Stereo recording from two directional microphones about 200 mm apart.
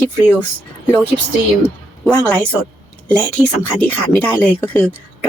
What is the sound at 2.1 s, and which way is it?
Speech, 15° left (ahead or behind).